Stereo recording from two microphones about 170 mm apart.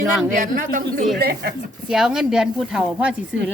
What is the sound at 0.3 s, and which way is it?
Speech, 55° right (ahead or behind).